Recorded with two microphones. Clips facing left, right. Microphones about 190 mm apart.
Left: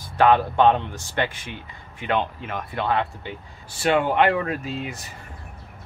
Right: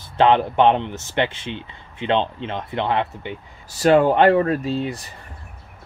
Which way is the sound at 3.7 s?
35° right (ahead or behind).